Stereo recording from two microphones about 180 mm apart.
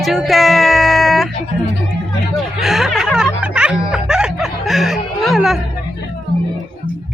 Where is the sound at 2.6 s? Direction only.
Centre (ahead or behind).